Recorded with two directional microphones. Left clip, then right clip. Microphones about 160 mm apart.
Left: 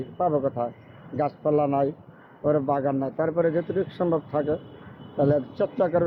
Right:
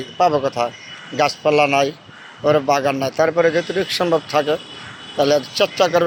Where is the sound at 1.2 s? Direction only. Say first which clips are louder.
Right 8 dB; 20° right (ahead or behind).